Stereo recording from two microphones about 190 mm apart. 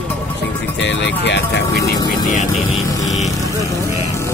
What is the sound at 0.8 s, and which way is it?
Speech, 65° left (ahead or behind).